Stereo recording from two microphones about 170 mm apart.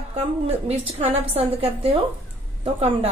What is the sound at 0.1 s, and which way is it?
A woman's voice, 35° right (ahead or behind).